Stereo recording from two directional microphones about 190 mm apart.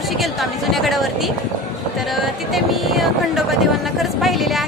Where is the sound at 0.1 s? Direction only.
Centre (ahead or behind).